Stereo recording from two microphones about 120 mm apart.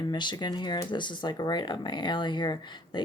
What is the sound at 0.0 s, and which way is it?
Speech, 35° left (ahead or behind).